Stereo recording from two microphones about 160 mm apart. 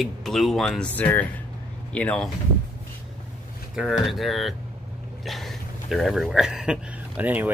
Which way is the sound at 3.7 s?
5° right (ahead or behind).